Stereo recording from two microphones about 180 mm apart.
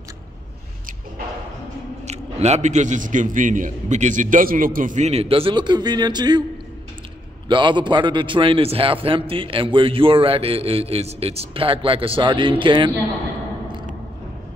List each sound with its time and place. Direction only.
2.0 s a man's voice: 40° right (ahead or behind); by 6.4 s 25° right (ahead or behind)
7.4 s a man's voice: 25° right (ahead or behind)